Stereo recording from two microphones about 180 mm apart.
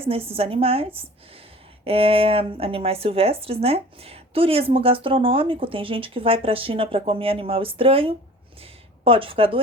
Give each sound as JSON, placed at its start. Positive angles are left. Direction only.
{"t": 0.3, "sound": "speech", "side_deg": -30}